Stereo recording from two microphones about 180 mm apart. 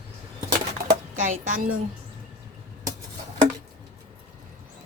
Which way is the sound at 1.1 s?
45° right (ahead or behind).